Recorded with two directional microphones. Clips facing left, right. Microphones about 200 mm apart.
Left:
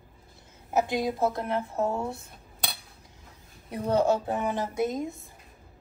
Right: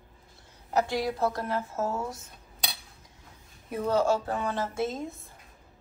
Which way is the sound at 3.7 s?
25° left (ahead or behind).